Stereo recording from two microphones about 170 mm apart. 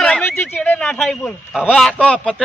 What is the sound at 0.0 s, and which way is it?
Speech, 10° left (ahead or behind).